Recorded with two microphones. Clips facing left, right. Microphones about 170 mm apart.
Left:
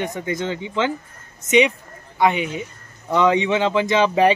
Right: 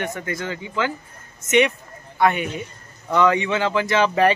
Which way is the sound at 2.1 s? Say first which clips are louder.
Left 1 dB; 15° left (ahead or behind).